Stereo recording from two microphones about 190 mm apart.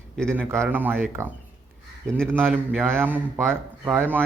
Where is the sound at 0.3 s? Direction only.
15° right (ahead or behind).